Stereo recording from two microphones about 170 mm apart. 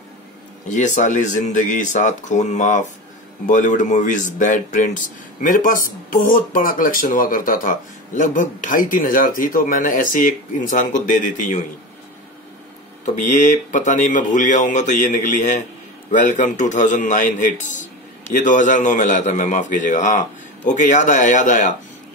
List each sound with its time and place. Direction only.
0.7 s speech: 45° left (ahead or behind)
13.0 s speech: 45° left (ahead or behind)